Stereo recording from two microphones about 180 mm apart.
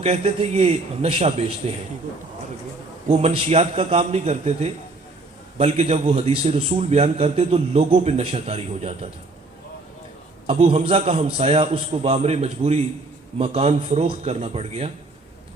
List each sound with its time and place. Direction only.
0.0 s a man's voice: 35° right (ahead or behind)
3.1 s a man's voice: 35° right (ahead or behind)
10.4 s a man's voice: 35° right (ahead or behind)